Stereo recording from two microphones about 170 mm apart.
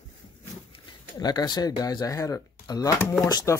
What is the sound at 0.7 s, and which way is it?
Speech, 25° left (ahead or behind).